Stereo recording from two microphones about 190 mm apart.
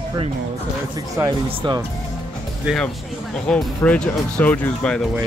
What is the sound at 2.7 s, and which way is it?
Speech, 5° right (ahead or behind).